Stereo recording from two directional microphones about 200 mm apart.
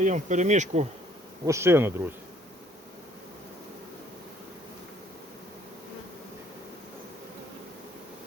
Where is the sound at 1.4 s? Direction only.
15° right (ahead or behind).